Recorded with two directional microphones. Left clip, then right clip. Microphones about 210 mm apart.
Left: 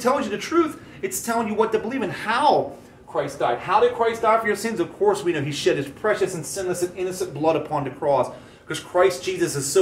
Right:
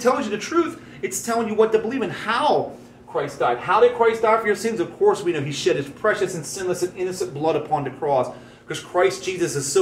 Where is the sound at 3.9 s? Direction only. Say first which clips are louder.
Right 2 dB; 15° left (ahead or behind).